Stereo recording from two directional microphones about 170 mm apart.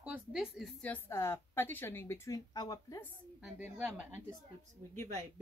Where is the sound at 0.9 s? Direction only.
15° left (ahead or behind).